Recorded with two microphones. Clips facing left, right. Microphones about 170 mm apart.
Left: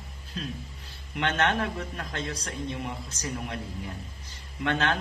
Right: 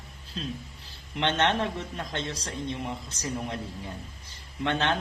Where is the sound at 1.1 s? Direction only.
25° right (ahead or behind).